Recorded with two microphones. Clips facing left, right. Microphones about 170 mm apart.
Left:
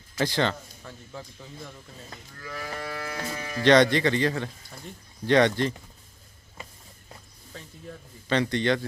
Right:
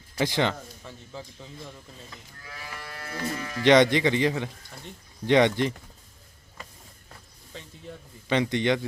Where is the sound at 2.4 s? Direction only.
60° left (ahead or behind).